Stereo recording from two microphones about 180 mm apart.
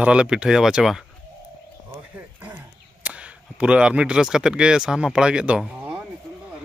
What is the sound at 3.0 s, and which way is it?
Speech, 5° right (ahead or behind).